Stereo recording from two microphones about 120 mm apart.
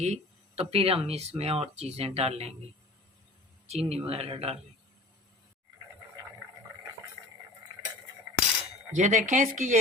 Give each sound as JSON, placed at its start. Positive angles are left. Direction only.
{"t": 0.0, "sound": "speech", "side_deg": -60}
{"t": 3.7, "sound": "speech", "side_deg": -60}
{"t": 9.0, "sound": "speech", "side_deg": -90}